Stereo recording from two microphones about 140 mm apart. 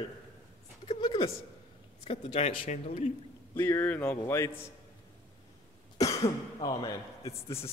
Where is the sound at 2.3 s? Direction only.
50° left (ahead or behind).